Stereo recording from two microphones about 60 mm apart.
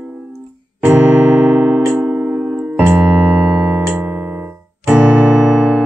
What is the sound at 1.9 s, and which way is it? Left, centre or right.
Keyboard, right.